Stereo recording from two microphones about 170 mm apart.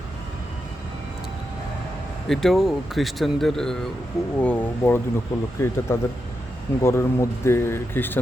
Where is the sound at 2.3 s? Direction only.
Centre (ahead or behind).